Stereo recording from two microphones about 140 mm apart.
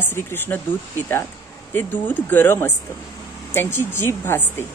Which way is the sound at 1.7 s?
15° left (ahead or behind).